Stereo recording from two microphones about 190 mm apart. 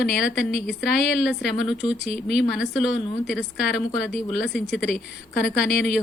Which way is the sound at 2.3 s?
65° left (ahead or behind).